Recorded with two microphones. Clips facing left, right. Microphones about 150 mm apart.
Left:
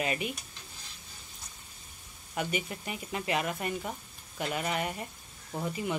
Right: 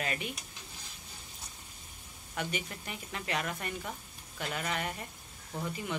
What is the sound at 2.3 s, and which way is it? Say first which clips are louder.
Speech: left 4 dB; 10° left (ahead or behind).